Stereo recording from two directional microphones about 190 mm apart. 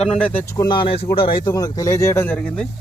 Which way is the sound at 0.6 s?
25° left (ahead or behind).